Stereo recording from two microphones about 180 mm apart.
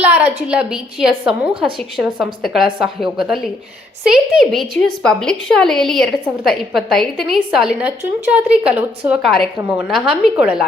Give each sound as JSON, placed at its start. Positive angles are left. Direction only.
{"t": 0.4, "sound": "a woman's voice", "side_deg": -5}